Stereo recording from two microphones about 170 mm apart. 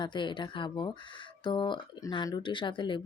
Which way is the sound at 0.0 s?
30° left (ahead or behind).